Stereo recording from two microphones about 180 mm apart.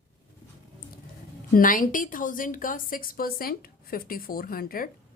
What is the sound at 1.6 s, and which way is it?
A woman's voice, 50° left (ahead or behind).